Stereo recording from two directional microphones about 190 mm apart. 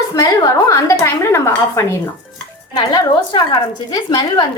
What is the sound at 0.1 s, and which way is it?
A woman's voice, 15° left (ahead or behind).